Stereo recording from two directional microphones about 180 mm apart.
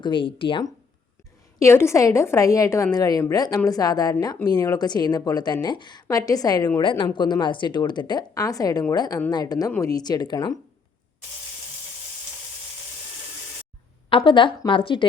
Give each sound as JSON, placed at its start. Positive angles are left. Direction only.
{"t": 0.0, "sound": "a woman's voice", "side_deg": 30}
{"t": 1.5, "sound": "a woman's voice", "side_deg": 15}
{"t": 14.1, "sound": "a woman's voice", "side_deg": 30}